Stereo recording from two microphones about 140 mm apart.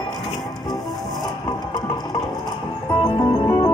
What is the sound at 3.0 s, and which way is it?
Music, 25° left (ahead or behind).